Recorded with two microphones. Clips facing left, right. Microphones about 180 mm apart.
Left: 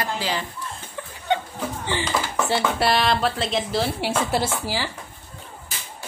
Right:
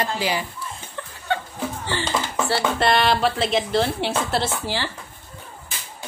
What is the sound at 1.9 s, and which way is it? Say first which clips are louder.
Dishes: left 1 dB; 15° left (ahead or behind).